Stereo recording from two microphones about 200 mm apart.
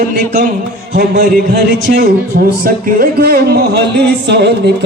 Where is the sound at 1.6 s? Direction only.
50° right (ahead or behind).